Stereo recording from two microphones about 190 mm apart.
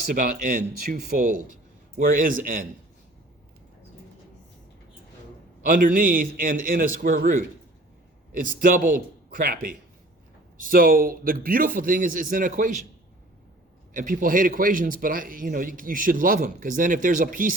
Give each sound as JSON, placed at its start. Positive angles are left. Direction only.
{"t": 0.1, "sound": "a man's voice", "side_deg": -45}
{"t": 5.6, "sound": "a man's voice", "side_deg": -45}
{"t": 13.9, "sound": "a man's voice", "side_deg": -45}